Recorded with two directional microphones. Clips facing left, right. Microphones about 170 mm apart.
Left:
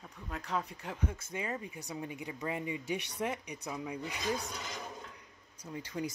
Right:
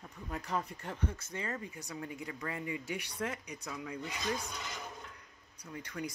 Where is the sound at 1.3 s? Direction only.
15° left (ahead or behind).